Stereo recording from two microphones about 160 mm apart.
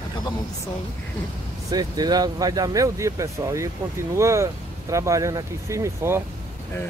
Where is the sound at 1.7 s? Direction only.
25° right (ahead or behind).